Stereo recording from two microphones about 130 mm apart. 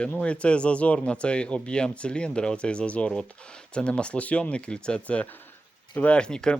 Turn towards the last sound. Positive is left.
turn(degrees=5)  # may be behind; listen again after turning